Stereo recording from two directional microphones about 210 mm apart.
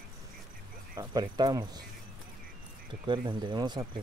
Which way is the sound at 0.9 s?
20° right (ahead or behind).